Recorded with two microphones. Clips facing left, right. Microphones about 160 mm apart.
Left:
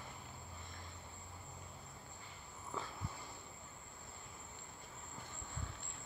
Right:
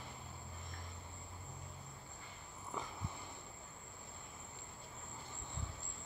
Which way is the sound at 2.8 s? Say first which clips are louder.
Even; 15° right (ahead or behind).